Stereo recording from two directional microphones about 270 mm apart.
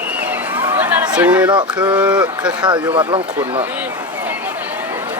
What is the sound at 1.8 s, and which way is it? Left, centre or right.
Speech, centre.